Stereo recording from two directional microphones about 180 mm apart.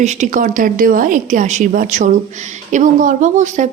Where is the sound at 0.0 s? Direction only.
40° right (ahead or behind).